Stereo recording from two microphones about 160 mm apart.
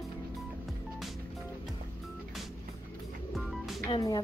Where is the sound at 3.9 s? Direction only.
20° left (ahead or behind).